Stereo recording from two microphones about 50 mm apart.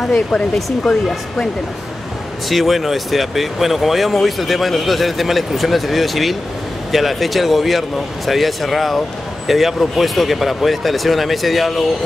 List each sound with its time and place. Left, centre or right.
0.0 s speech: centre
0.6 s speech: centre
2.5 s speech: centre